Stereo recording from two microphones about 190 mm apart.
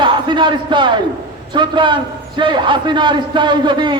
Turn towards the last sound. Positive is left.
turn(degrees=-25)  # may be behind; listen again after turning